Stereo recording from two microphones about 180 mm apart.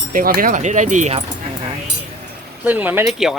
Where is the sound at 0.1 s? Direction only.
50° right (ahead or behind).